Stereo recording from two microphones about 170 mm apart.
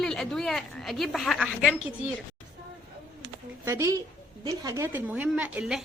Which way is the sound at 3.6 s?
15° right (ahead or behind).